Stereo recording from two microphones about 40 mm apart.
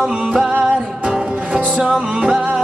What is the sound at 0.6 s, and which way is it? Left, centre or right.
Music, right.